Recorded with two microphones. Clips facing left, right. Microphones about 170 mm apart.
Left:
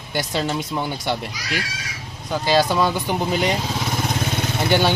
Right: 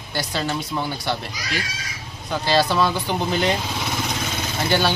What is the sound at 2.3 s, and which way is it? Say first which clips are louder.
Speech: left 1 dB; 15° left (ahead or behind).